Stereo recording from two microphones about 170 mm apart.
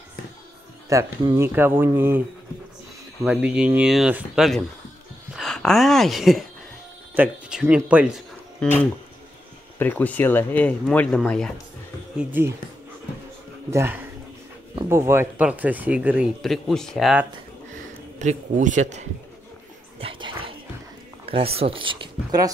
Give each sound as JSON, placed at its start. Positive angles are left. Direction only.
{"t": 0.8, "sound": "speech", "side_deg": -20}
{"t": 3.3, "sound": "speech", "side_deg": -5}
{"t": 8.6, "sound": "speech", "side_deg": 5}
{"t": 12.2, "sound": "speech", "side_deg": -10}
{"t": 13.7, "sound": "speech", "side_deg": -15}
{"t": 18.2, "sound": "a man's voice", "side_deg": -45}
{"t": 20.0, "sound": "dog", "side_deg": -30}
{"t": 21.3, "sound": "speech", "side_deg": -35}